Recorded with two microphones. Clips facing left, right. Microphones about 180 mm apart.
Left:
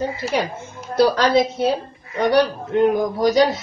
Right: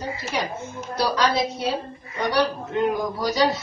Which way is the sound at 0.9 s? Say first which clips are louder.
Left 7 dB; 55° left (ahead or behind).